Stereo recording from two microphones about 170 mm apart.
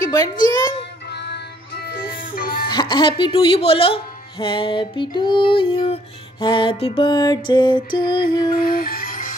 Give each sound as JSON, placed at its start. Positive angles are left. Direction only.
{"t": 0.0, "sound": "music", "side_deg": 20}
{"t": 1.1, "sound": "music", "side_deg": 75}
{"t": 2.7, "sound": "speech", "side_deg": 25}
{"t": 6.4, "sound": "music", "side_deg": 30}
{"t": 8.5, "sound": "music", "side_deg": 60}